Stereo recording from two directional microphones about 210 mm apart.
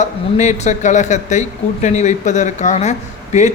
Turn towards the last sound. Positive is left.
turn(degrees=35)  # may be behind; listen again after turning